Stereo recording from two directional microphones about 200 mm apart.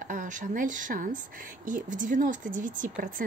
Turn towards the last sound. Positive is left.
turn(degrees=-40)  # may be behind; listen again after turning